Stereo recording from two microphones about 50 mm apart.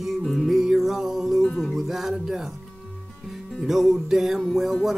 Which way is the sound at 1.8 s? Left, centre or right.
Centre.